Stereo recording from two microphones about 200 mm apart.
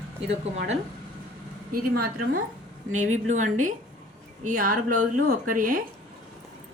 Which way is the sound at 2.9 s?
40° right (ahead or behind).